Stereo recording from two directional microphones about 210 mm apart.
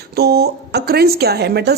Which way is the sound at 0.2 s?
50° right (ahead or behind).